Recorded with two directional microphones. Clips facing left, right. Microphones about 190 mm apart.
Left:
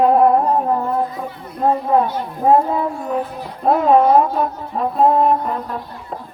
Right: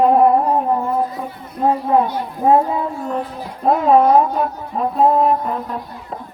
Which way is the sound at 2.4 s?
5° right (ahead or behind).